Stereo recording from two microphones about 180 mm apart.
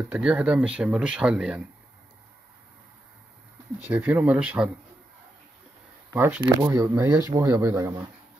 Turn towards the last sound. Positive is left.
turn(degrees=-15)  # may be behind; listen again after turning